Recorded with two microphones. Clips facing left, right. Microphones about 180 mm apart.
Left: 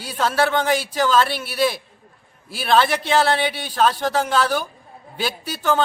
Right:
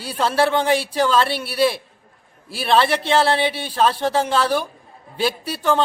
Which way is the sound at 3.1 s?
30° right (ahead or behind).